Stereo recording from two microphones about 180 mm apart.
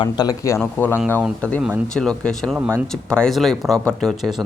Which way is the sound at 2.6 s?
10° right (ahead or behind).